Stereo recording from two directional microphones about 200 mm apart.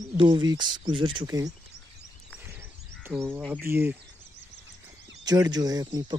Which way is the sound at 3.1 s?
10° right (ahead or behind).